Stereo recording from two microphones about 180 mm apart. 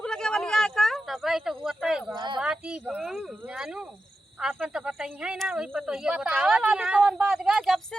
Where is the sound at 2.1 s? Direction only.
25° right (ahead or behind).